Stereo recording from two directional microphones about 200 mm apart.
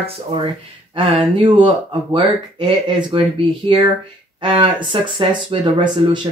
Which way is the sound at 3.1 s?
25° right (ahead or behind).